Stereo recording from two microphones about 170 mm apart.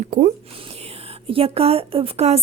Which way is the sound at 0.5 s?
35° right (ahead or behind).